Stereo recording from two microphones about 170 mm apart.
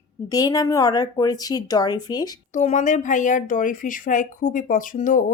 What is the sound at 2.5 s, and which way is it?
A woman's voice, 45° left (ahead or behind).